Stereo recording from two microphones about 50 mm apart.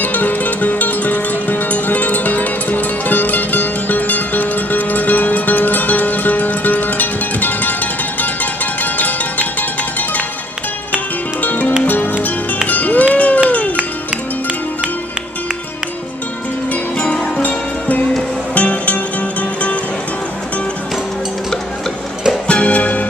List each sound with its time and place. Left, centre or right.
0.0 s music: left
11.4 s music: left
16.7 s music: left
22.5 s music: left